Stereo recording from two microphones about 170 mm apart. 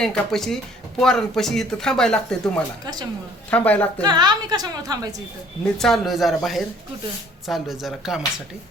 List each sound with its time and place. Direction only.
0.0 s speech: centre (ahead or behind)
2.8 s a woman's voice: 25° right (ahead or behind)
3.5 s speech: 10° left (ahead or behind)
4.0 s a woman's voice: 25° right (ahead or behind)
5.7 s speech: centre (ahead or behind)